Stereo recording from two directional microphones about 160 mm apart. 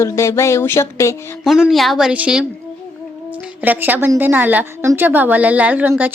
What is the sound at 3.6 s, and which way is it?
A woman's voice, 10° right (ahead or behind).